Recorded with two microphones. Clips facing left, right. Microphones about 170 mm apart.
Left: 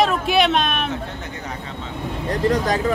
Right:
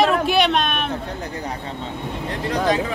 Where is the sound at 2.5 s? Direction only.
45° left (ahead or behind).